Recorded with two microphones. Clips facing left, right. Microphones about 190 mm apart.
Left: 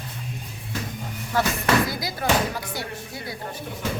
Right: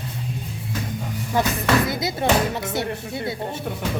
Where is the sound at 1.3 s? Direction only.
15° right (ahead or behind).